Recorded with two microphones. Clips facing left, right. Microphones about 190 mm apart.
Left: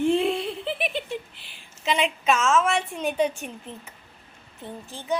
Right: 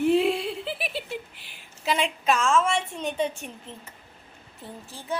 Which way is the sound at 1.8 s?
Centre (ahead or behind).